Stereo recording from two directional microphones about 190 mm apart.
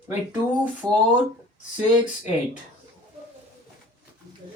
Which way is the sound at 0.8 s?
20° right (ahead or behind).